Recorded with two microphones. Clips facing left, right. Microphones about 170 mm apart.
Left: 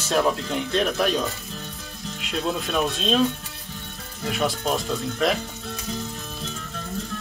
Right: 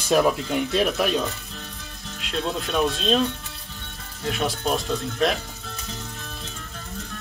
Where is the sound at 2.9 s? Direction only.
Centre (ahead or behind).